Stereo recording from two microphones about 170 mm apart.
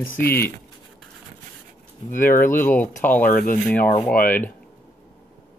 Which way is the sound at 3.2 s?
55° left (ahead or behind).